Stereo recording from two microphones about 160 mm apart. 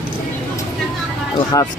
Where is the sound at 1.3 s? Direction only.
25° left (ahead or behind).